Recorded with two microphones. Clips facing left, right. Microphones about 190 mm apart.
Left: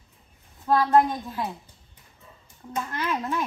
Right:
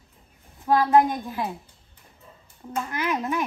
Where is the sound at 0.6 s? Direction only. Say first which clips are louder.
Right 1 dB; 15° right (ahead or behind).